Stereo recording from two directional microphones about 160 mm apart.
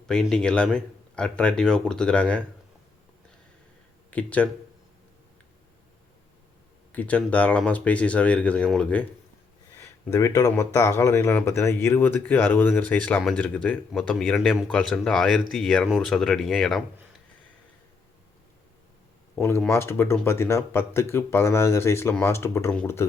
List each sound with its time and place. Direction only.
0.1 s speech: 5° left (ahead or behind)
4.1 s speech: 10° left (ahead or behind)
6.9 s speech: 10° left (ahead or behind)
9.8 s speech: 20° left (ahead or behind); by 16.8 s centre (ahead or behind)
19.4 s speech: 15° left (ahead or behind)